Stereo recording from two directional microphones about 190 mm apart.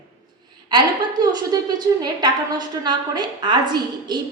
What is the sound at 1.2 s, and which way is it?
A woman's voice, 20° right (ahead or behind).